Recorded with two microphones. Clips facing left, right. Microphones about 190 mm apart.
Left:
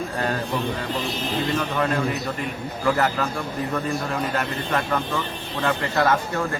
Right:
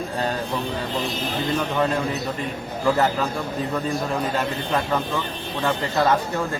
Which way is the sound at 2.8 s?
20° right (ahead or behind).